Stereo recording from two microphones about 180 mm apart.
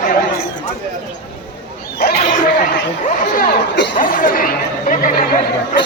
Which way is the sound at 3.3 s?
50° left (ahead or behind).